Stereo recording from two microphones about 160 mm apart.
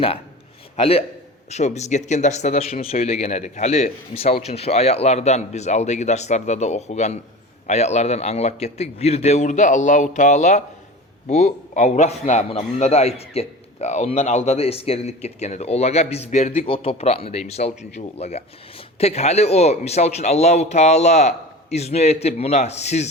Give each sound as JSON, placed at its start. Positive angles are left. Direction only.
{"t": 0.8, "sound": "a man's voice", "side_deg": 35}